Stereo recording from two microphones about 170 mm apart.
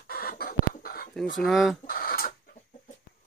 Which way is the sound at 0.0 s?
60° left (ahead or behind).